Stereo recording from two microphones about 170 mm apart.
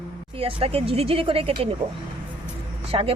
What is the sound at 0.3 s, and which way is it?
Speech, 35° right (ahead or behind).